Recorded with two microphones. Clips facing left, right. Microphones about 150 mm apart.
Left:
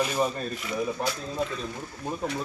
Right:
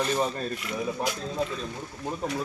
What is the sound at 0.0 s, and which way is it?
Speech, 5° left (ahead or behind).